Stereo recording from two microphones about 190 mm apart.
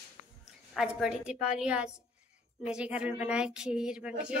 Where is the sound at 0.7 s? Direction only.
Centre (ahead or behind).